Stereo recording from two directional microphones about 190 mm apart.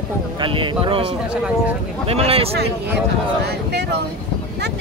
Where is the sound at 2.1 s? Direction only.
30° right (ahead or behind).